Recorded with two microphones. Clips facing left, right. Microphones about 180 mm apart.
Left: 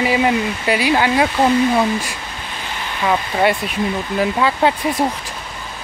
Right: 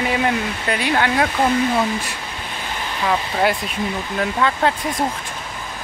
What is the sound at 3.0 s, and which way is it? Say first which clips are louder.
Speech: left 3 dB; 5° left (ahead or behind).